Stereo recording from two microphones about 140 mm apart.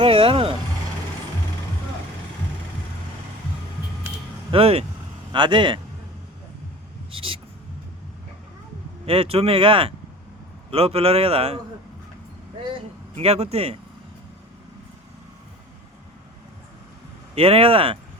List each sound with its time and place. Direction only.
0.0 s speech: 40° right (ahead or behind)
4.5 s a man's voice: 45° right (ahead or behind)
5.3 s speech: 35° right (ahead or behind)
7.1 s speech: 40° right (ahead or behind)
9.0 s a man's voice: 45° right (ahead or behind)
13.1 s a man's voice: 45° right (ahead or behind)
17.3 s a man's voice: 45° right (ahead or behind)